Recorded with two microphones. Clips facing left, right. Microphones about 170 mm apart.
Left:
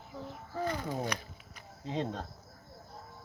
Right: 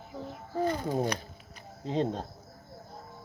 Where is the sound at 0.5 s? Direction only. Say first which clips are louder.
Right 6 dB; 25° right (ahead or behind).